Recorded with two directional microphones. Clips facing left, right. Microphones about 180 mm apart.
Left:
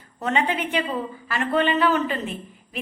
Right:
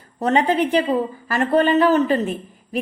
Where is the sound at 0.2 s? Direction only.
40° right (ahead or behind).